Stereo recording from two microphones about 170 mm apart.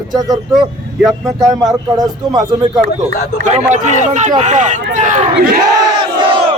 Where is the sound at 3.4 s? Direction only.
45° right (ahead or behind).